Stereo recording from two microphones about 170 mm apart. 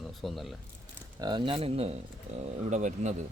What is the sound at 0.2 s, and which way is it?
Speech, centre (ahead or behind).